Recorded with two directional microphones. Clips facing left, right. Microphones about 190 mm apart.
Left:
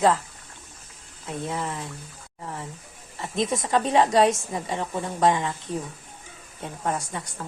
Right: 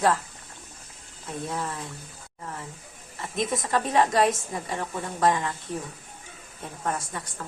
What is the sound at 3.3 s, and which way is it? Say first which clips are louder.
A woman's voice: left 3 dB; 25° left (ahead or behind).